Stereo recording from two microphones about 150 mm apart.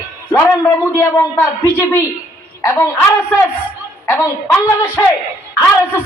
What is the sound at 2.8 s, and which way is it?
A man's voice, 10° left (ahead or behind).